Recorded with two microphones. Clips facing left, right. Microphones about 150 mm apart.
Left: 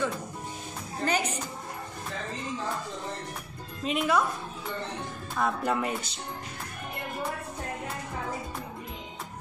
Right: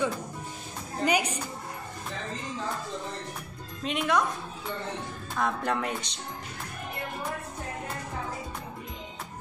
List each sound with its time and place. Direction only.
1.0 s a woman's voice: 10° right (ahead or behind)
3.8 s speech: centre (ahead or behind)
5.3 s speech: 5° left (ahead or behind)